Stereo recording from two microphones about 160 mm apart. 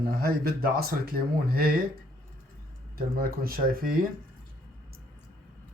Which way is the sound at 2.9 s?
70° right (ahead or behind).